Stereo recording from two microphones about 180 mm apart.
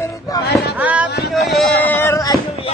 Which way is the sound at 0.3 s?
20° left (ahead or behind).